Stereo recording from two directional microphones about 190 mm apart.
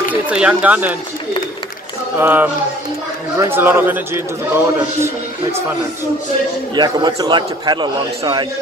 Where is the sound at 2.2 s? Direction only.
10° right (ahead or behind).